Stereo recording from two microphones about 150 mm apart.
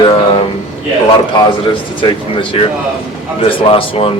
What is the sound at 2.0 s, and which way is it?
Speech, 35° left (ahead or behind).